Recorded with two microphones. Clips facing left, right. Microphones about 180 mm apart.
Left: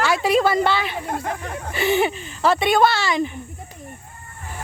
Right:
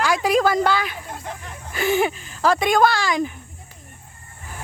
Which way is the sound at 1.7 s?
Centre (ahead or behind).